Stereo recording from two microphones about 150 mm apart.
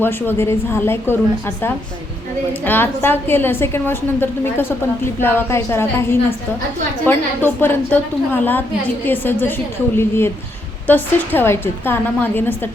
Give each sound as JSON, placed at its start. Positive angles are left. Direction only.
{"t": 0.0, "sound": "a woman's voice", "side_deg": 15}